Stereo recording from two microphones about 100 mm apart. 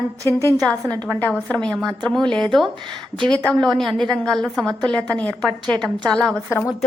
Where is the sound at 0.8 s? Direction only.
30° right (ahead or behind).